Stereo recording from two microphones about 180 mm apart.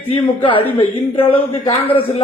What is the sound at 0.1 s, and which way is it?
A man's voice, 30° left (ahead or behind).